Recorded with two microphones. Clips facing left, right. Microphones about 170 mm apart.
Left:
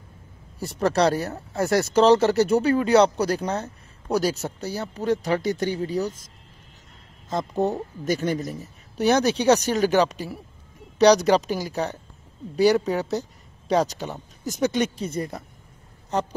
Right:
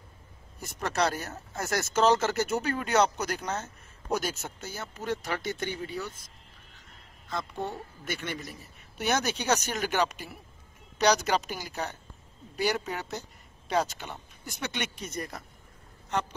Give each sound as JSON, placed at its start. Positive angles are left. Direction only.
{"t": 0.6, "sound": "speech", "side_deg": 35}
{"t": 7.5, "sound": "speech", "side_deg": 40}